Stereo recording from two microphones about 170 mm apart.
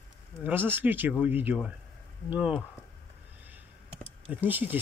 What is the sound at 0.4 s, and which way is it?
Speech, 10° right (ahead or behind).